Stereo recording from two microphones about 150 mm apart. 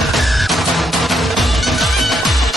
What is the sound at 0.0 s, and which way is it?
Music, centre (ahead or behind).